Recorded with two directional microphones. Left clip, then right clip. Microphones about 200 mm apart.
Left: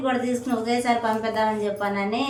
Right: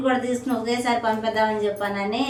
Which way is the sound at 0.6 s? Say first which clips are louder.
Even; centre (ahead or behind).